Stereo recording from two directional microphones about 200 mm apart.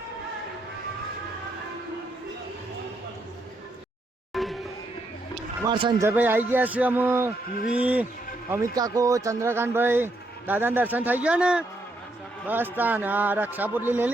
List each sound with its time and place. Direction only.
4.3 s music: centre (ahead or behind)
5.6 s speech: 25° right (ahead or behind)
6.0 s speech: 10° right (ahead or behind)